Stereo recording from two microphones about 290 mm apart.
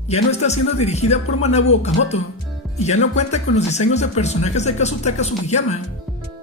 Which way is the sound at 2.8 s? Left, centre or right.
Left.